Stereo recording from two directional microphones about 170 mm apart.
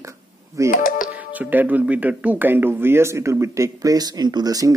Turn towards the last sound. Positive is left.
turn(degrees=-20)  # may be behind; listen again after turning